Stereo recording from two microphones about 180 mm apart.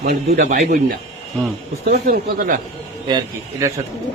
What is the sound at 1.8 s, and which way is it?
Speech, 60° right (ahead or behind).